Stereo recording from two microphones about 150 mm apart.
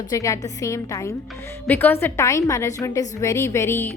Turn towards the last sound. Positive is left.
turn(degrees=15)  # may be behind; listen again after turning